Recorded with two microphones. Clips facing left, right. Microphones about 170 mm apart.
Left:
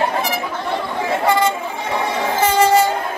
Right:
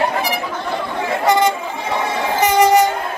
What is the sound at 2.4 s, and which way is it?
Train, 15° right (ahead or behind).